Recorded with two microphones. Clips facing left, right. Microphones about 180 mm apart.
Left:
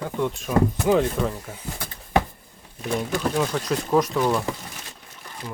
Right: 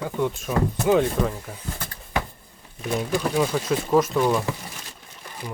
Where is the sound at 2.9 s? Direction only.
Centre (ahead or behind).